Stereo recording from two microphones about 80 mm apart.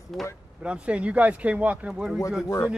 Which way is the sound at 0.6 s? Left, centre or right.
Centre.